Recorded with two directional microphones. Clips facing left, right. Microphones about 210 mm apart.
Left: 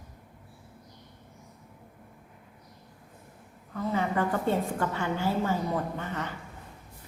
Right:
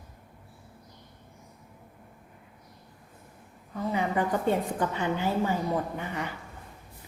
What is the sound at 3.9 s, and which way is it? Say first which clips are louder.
A woman's voice: even; 15° right (ahead or behind).